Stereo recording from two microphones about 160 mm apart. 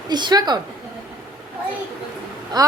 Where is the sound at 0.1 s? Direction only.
25° right (ahead or behind).